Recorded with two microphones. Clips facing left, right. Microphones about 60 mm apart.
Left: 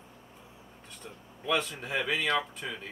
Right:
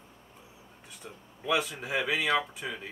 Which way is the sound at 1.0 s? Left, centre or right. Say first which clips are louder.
Right 1 dB; centre.